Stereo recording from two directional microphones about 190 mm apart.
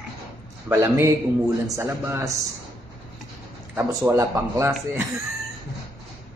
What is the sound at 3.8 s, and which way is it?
Speech, 15° right (ahead or behind).